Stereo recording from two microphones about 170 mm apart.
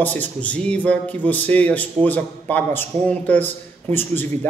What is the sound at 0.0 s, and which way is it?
A man's voice, 10° left (ahead or behind).